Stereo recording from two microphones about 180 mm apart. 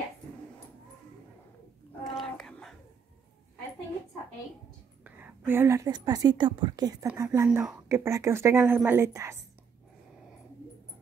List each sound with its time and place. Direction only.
2.0 s whispering: centre (ahead or behind)
5.0 s a woman's voice: 10° right (ahead or behind)
7.4 s speech: 5° right (ahead or behind)
7.9 s a woman's voice: 15° right (ahead or behind)